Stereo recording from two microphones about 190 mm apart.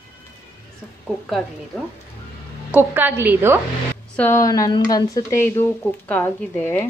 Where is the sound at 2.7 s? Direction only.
10° right (ahead or behind).